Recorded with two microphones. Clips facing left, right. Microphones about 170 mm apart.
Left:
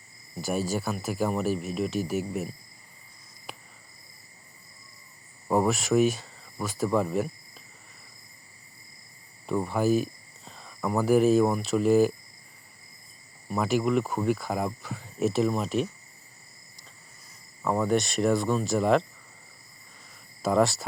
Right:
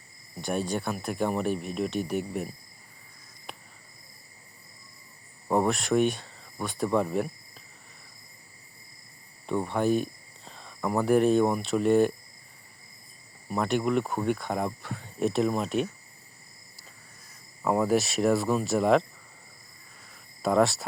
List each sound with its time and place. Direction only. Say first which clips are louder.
0.4 s speech: left 1 dB; 5° left (ahead or behind)
3.5 s cricket: left 1 dB; centre (ahead or behind)
5.5 s speech: left 1 dB; centre (ahead or behind)
9.5 s speech: left 1 dB; centre (ahead or behind)
13.5 s speech: left 1 dB; centre (ahead or behind)
17.6 s speech: right 1 dB; 5° right (ahead or behind)
20.4 s speech: even; centre (ahead or behind)